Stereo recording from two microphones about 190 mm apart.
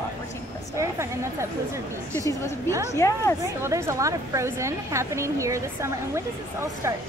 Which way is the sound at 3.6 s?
15° right (ahead or behind).